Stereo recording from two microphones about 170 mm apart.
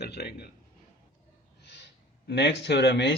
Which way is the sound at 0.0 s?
70° left (ahead or behind).